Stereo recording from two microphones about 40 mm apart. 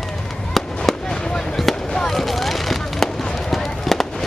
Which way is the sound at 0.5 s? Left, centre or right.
Centre.